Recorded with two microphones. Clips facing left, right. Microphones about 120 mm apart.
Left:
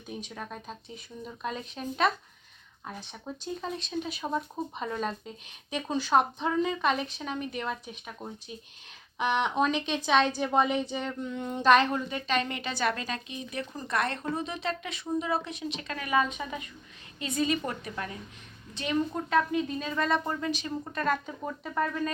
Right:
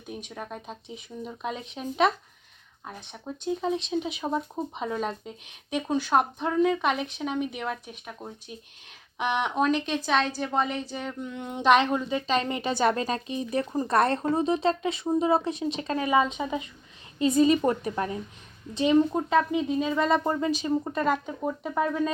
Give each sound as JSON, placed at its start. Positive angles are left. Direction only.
{"t": 0.3, "sound": "speech", "side_deg": -10}
{"t": 3.3, "sound": "speech", "side_deg": -5}
{"t": 3.6, "sound": "a woman's voice", "side_deg": -15}
{"t": 17.2, "sound": "a woman's voice", "side_deg": -35}
{"t": 21.0, "sound": "speech", "side_deg": -15}